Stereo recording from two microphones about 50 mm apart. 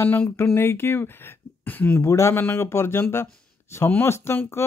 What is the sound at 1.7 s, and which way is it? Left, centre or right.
Speech, left.